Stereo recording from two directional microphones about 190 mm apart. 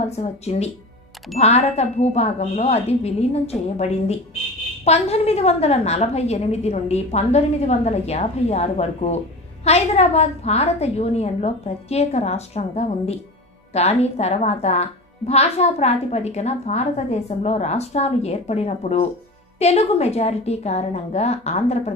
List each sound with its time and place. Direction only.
0.1 s a woman's voice: 35° left (ahead or behind)